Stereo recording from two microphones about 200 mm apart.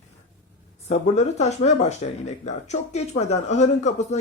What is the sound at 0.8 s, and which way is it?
Speech, 35° left (ahead or behind).